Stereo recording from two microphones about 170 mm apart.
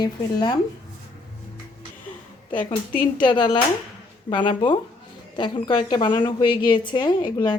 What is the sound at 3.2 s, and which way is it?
A woman's voice, 25° left (ahead or behind).